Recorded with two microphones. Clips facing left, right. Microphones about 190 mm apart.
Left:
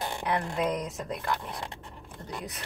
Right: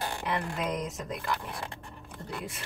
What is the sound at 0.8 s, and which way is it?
Speech, centre (ahead or behind).